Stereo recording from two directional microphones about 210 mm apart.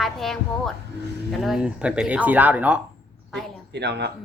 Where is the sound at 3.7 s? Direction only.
55° right (ahead or behind).